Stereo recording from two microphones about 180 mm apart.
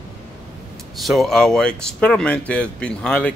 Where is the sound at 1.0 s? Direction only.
Centre (ahead or behind).